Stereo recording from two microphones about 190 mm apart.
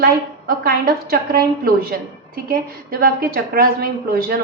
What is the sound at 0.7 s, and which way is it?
A woman's voice, 55° right (ahead or behind).